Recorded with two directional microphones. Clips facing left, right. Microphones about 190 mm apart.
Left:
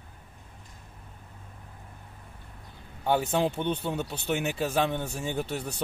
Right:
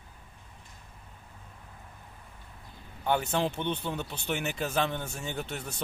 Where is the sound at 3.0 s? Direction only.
10° left (ahead or behind).